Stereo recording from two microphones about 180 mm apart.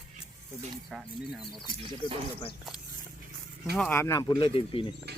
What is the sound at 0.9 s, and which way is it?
Speech, centre (ahead or behind).